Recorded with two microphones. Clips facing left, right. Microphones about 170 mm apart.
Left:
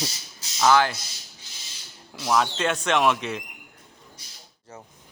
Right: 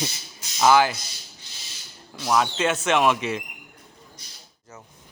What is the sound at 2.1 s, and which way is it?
Speech, centre (ahead or behind).